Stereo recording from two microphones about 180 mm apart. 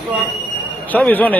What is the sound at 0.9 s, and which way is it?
Speech, 10° left (ahead or behind).